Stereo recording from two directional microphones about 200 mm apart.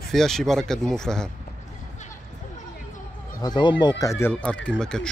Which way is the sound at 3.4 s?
20° left (ahead or behind).